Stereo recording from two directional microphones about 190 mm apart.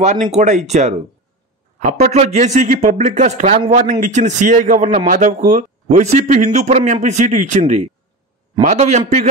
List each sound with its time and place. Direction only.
0.0 s speech: 40° right (ahead or behind)